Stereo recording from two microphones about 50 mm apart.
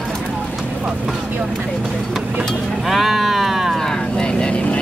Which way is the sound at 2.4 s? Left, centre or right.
Centre.